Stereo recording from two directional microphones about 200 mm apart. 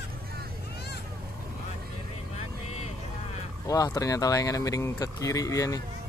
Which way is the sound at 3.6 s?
15° left (ahead or behind).